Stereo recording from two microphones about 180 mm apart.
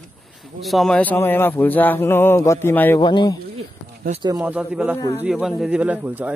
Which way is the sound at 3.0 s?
25° left (ahead or behind).